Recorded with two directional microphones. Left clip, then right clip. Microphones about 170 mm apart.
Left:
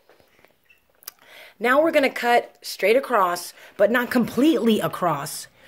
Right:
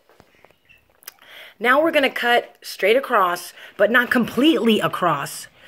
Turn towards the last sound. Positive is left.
turn(degrees=0)  # may be behind; listen again after turning